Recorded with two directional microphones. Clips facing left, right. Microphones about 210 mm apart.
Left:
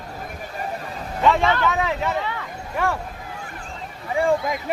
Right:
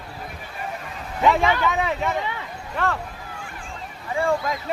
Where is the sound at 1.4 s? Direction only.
15° right (ahead or behind).